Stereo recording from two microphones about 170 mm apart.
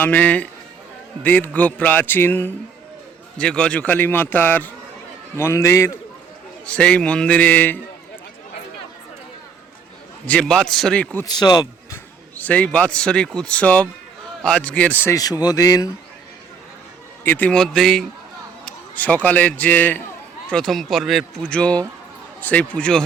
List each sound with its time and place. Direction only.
0.0 s a man's voice: 10° left (ahead or behind)
10.2 s a man's voice: 5° left (ahead or behind)
11.3 s speech: 25° left (ahead or behind)
12.4 s a man's voice: 10° left (ahead or behind)
17.2 s a man's voice: 10° left (ahead or behind)